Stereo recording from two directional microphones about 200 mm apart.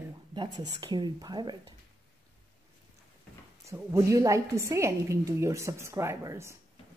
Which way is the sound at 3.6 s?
15° right (ahead or behind).